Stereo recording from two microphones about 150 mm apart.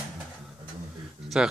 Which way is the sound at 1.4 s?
5° right (ahead or behind).